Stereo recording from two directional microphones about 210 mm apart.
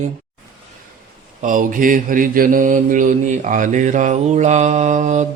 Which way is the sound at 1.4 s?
40° right (ahead or behind).